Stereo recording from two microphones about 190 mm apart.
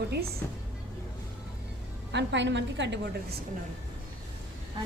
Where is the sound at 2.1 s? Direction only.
70° right (ahead or behind).